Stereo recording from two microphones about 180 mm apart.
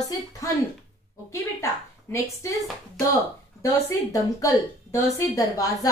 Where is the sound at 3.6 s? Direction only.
20° left (ahead or behind).